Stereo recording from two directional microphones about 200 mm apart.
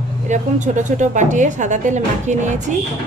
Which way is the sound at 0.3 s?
40° right (ahead or behind).